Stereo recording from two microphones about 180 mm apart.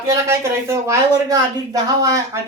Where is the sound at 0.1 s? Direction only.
15° right (ahead or behind).